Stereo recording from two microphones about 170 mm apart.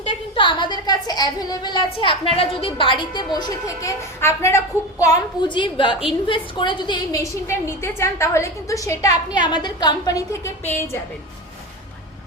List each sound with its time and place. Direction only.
0.3 s a woman's voice: 25° left (ahead or behind)